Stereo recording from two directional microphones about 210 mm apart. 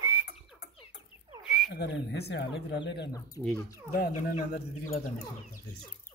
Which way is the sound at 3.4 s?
5° left (ahead or behind).